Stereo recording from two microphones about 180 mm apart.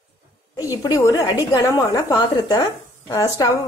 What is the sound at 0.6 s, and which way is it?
Speech, 20° left (ahead or behind).